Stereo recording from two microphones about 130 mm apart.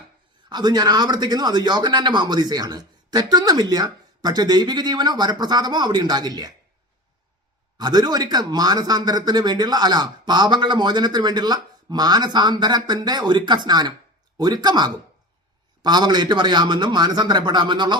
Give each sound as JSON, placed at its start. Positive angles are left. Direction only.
{"t": 0.5, "sound": "speech", "side_deg": -35}
{"t": 7.8, "sound": "speech", "side_deg": -35}